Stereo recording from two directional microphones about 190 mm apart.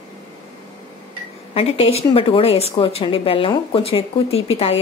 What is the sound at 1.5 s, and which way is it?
Speech, 30° left (ahead or behind).